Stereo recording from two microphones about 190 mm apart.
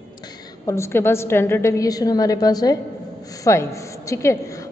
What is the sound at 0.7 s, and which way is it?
A woman's voice, 15° left (ahead or behind).